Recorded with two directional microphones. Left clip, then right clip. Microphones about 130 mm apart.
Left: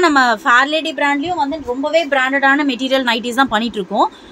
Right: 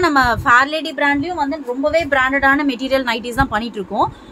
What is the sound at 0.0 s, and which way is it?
A woman's voice, 25° left (ahead or behind).